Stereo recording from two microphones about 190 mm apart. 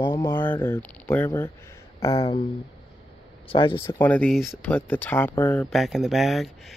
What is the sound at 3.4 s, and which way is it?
Speech, 25° left (ahead or behind).